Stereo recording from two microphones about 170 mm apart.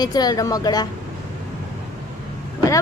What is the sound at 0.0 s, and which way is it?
Speech, 25° left (ahead or behind).